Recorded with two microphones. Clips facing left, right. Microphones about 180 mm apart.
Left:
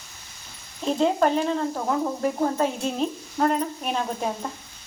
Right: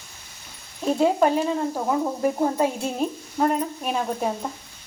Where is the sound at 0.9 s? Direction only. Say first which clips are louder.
Right 2 dB; 10° right (ahead or behind).